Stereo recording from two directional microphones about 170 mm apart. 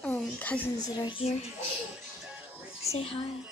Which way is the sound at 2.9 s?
35° left (ahead or behind).